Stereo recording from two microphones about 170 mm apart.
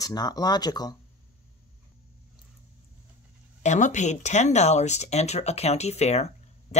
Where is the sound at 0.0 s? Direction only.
25° left (ahead or behind).